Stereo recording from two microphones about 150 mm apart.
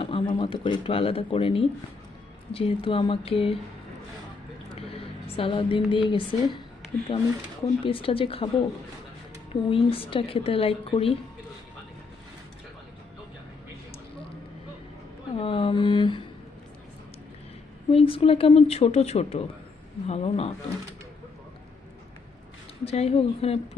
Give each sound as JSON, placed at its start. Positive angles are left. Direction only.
{"t": 0.0, "sound": "a woman's voice", "side_deg": 35}
{"t": 4.7, "sound": "a woman's voice", "side_deg": 40}
{"t": 15.4, "sound": "a woman's voice", "side_deg": 35}
{"t": 17.9, "sound": "a woman's voice", "side_deg": 40}
{"t": 22.8, "sound": "speech", "side_deg": 40}